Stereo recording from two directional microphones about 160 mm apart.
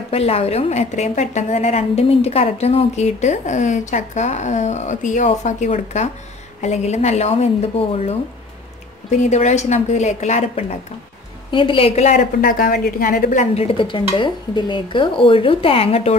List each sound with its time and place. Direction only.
0.1 s a woman's voice: 40° left (ahead or behind)
11.5 s speech: 35° left (ahead or behind)
12.4 s a woman's voice: 65° left (ahead or behind)
13.7 s speech: 30° left (ahead or behind)